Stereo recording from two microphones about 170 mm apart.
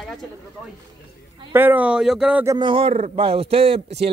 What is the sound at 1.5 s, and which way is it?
Speech, 10° right (ahead or behind).